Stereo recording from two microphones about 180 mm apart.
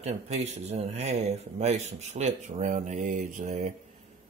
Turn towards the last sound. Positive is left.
turn(degrees=-40)  # may be behind; listen again after turning